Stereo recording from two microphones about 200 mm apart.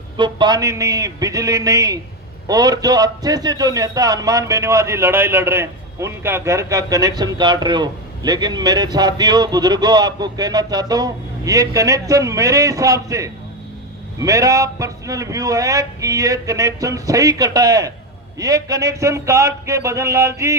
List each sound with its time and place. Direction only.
0.2 s a man's voice: 20° right (ahead or behind)